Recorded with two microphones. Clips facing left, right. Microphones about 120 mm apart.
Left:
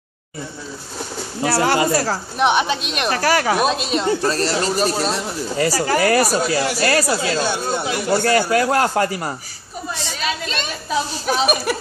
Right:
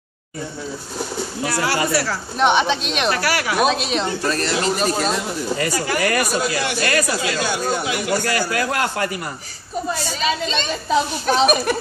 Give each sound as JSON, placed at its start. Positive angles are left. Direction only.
{"t": 1.4, "sound": "speech", "side_deg": 30}
{"t": 2.3, "sound": "speech", "side_deg": 5}
{"t": 3.1, "sound": "speech", "side_deg": 40}
{"t": 3.5, "sound": "speech", "side_deg": 0}
{"t": 4.2, "sound": "speech", "side_deg": 35}
{"t": 10.2, "sound": "speech", "side_deg": 5}